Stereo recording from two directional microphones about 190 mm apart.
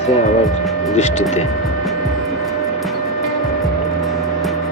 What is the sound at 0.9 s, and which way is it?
Speech, 35° left (ahead or behind).